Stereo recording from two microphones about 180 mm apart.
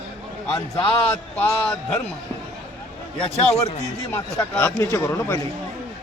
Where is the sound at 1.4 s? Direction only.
5° left (ahead or behind).